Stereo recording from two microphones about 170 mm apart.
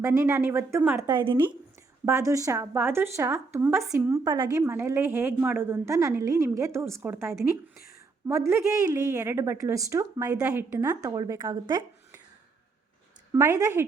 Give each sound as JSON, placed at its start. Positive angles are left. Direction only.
{"t": 0.0, "sound": "a woman's voice", "side_deg": -15}
{"t": 1.2, "sound": "speech", "side_deg": -30}
{"t": 2.0, "sound": "a woman's voice", "side_deg": -15}
{"t": 13.3, "sound": "a woman's voice", "side_deg": -15}